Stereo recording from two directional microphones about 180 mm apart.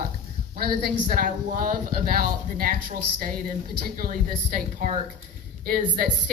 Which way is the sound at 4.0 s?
55° right (ahead or behind).